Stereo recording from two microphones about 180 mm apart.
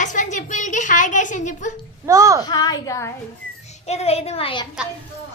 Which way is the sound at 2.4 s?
20° left (ahead or behind).